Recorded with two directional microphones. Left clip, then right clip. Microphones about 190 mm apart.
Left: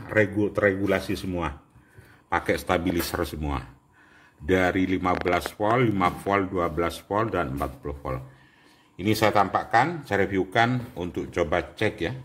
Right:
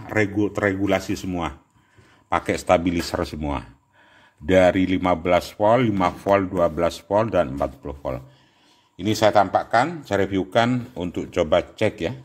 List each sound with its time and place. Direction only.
0.0 s speech: 50° right (ahead or behind)